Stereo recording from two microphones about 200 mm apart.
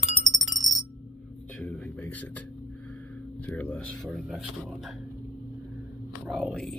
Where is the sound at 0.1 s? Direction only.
15° right (ahead or behind).